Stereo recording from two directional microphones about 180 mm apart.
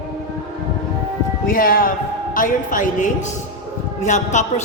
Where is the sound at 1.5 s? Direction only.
55° left (ahead or behind).